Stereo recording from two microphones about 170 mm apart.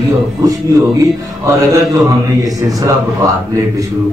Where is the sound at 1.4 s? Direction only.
20° right (ahead or behind).